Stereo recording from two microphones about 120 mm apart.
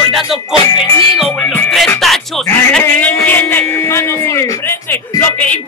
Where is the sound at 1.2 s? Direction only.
10° left (ahead or behind).